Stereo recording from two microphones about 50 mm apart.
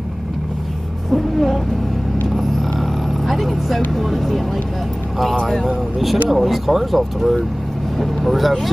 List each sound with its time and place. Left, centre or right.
1.1 s speech: centre
3.3 s speech: centre
5.4 s speech: centre